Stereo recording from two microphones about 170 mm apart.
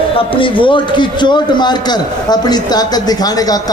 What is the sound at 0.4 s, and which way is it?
A man's voice, 30° left (ahead or behind).